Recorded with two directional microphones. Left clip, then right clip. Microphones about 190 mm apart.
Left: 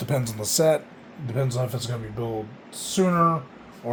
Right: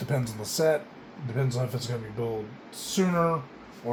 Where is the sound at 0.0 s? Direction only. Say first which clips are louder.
Left 4 dB; 50° left (ahead or behind).